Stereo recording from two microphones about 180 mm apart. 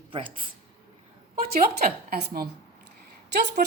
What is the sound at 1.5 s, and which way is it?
A woman's voice, 55° right (ahead or behind).